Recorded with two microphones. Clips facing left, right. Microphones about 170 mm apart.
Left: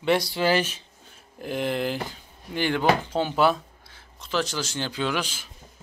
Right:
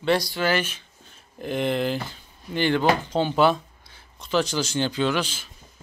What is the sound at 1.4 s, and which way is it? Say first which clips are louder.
Speech: right 2 dB; 5° left (ahead or behind).